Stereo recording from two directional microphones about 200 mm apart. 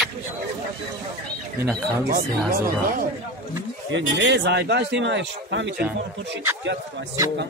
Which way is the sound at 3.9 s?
60° right (ahead or behind).